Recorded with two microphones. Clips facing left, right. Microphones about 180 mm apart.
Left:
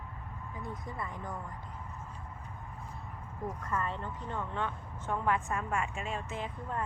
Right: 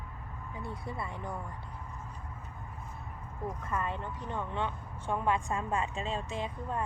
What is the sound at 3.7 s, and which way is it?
A woman's voice, 15° right (ahead or behind).